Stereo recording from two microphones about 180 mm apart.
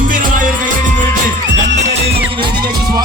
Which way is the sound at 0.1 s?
50° right (ahead or behind).